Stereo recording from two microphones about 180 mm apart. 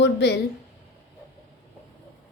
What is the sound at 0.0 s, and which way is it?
Speech, 70° left (ahead or behind).